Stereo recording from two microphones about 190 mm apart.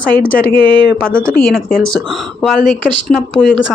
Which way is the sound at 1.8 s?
Centre (ahead or behind).